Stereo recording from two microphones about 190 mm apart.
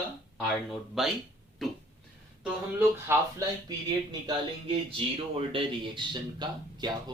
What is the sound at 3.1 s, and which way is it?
Speech, 10° right (ahead or behind).